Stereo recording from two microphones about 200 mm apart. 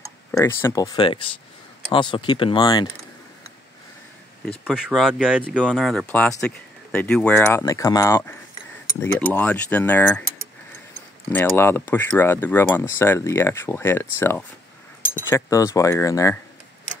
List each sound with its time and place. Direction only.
0.3 s speech: 15° left (ahead or behind)
4.7 s speech: 5° right (ahead or behind)
11.3 s speech: 10° left (ahead or behind)